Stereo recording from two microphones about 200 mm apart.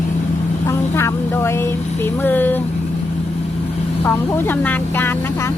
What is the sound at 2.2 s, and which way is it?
Speech, 10° left (ahead or behind).